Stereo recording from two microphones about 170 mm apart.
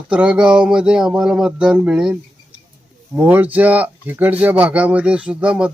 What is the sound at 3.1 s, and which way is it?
Speech, 10° right (ahead or behind).